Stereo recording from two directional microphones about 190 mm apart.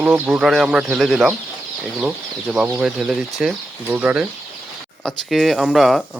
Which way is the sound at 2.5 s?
5° right (ahead or behind).